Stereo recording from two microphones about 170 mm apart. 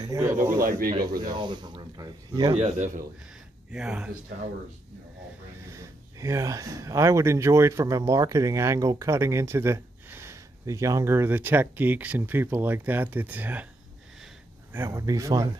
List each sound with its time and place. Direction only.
0.0 s speech: 20° right (ahead or behind)
0.6 s speech: 60° right (ahead or behind)
0.9 s speech: 25° right (ahead or behind)
2.5 s a man's voice: 40° right (ahead or behind)
3.7 s speech: 5° right (ahead or behind)
5.7 s speech: 20° right (ahead or behind)
14.7 s speech: 15° right (ahead or behind)